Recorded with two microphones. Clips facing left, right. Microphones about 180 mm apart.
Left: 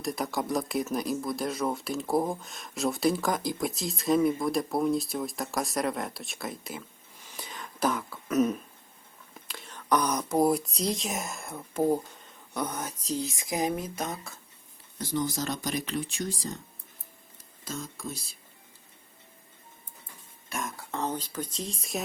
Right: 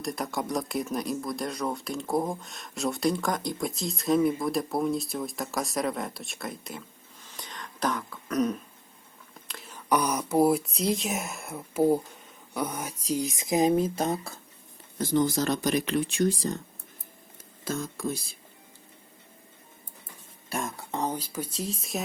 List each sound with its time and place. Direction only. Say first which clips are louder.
0.0 s speech: left 1 dB; centre (ahead or behind)
7.2 s throat clearing: left 1 dB; 10° left (ahead or behind)
9.3 s speech: even; centre (ahead or behind); by 14.3 s 30° right (ahead or behind)
14.9 s speech: right 6 dB; 55° right (ahead or behind)
17.7 s speech: right 6 dB; 55° right (ahead or behind)
20.5 s speech: right 3 dB; 30° right (ahead or behind)
20.9 s speech: right 1 dB; 10° right (ahead or behind)